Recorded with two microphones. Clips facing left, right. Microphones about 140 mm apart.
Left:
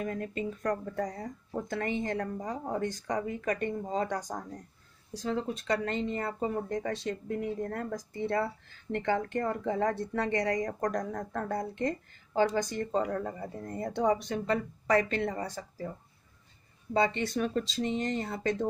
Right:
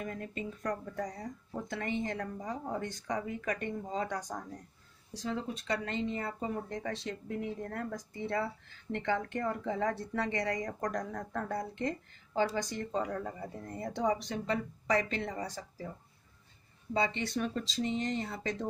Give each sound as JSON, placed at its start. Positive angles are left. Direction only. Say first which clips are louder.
{"t": 0.0, "sound": "speech", "louder": "left 5 dB", "side_deg": 55}
{"t": 16.9, "sound": "speech", "louder": "left 4 dB", "side_deg": 50}